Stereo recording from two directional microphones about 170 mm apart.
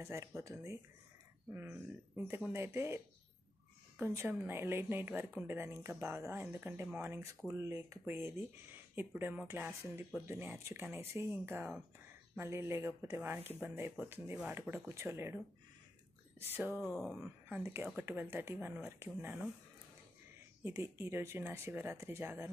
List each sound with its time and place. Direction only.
0.0 s speech: 15° right (ahead or behind)
16.9 s speech: centre (ahead or behind)
17.2 s speech: 10° right (ahead or behind)
20.6 s speech: 15° right (ahead or behind)